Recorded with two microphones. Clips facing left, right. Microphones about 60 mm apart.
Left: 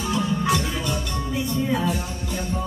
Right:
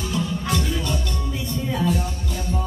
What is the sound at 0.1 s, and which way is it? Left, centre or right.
Music, centre.